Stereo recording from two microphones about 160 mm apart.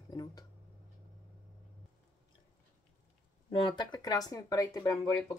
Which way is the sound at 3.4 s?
30° left (ahead or behind).